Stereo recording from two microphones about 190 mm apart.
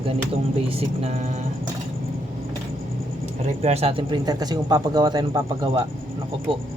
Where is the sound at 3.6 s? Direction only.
35° right (ahead or behind).